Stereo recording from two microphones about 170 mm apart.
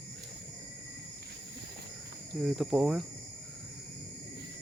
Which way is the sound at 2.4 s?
Centre (ahead or behind).